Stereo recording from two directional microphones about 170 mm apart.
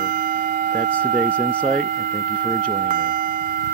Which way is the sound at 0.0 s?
55° right (ahead or behind).